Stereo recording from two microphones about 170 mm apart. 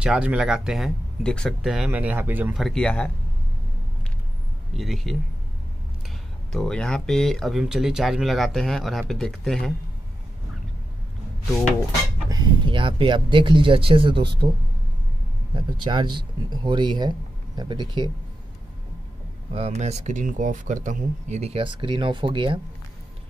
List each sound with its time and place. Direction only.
0.0 s speech: 5° right (ahead or behind)
2.6 s speech: 5° left (ahead or behind)
4.7 s speech: centre (ahead or behind)
6.5 s speech: 5° left (ahead or behind)
12.3 s speech: 25° right (ahead or behind)
15.5 s speech: 25° right (ahead or behind)
19.5 s speech: 40° right (ahead or behind)